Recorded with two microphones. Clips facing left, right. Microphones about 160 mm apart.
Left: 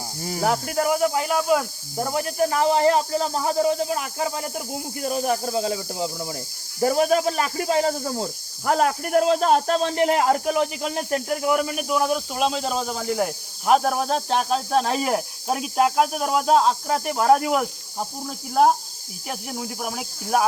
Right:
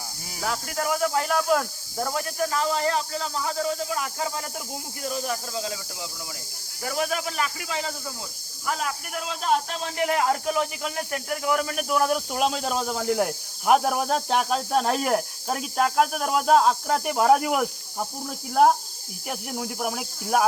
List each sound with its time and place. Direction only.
0.2 s speech: 45° left (ahead or behind)
0.4 s speech: 25° left (ahead or behind); by 1.6 s 5° left (ahead or behind)
2.0 s a man's voice: 25° left (ahead or behind)
11.9 s speech: centre (ahead or behind)
19.3 s speech: centre (ahead or behind)